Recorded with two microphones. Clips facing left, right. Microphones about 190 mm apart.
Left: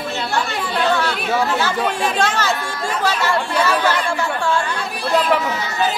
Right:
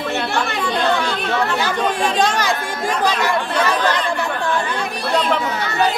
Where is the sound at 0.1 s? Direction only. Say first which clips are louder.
Even; 60° right (ahead or behind).